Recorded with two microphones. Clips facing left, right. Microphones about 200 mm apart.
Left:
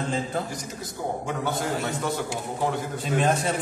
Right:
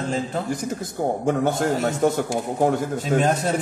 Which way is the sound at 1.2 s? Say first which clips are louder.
Right 9 dB; 50° right (ahead or behind).